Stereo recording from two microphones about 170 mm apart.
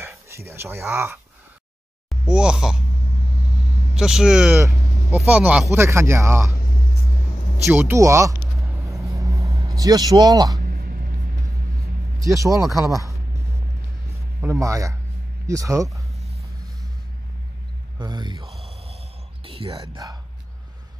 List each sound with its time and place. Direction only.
0.0 s speech: 15° right (ahead or behind)
3.9 s speech: 5° right (ahead or behind)
7.6 s speech: 10° right (ahead or behind)
8.8 s vehicle: 20° right (ahead or behind)
9.7 s speech: 20° right (ahead or behind)
10.6 s a sound: 60° right (ahead or behind)
12.2 s speech: 20° right (ahead or behind)
14.4 s speech: 15° right (ahead or behind)
17.9 s speech: 25° right (ahead or behind)
18.4 s a sound: centre (ahead or behind)
19.4 s whispering: 35° right (ahead or behind)
19.7 s speech: 25° right (ahead or behind)